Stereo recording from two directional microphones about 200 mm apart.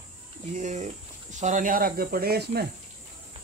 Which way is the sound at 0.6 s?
35° right (ahead or behind).